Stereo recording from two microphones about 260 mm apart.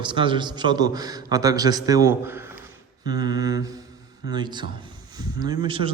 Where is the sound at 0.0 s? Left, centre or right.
Centre.